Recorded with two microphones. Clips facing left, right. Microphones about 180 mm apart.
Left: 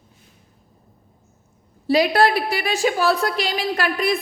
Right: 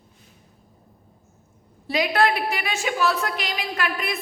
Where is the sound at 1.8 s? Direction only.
35° left (ahead or behind).